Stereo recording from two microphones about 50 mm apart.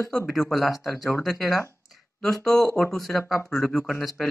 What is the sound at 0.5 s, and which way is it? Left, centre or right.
Speech, centre.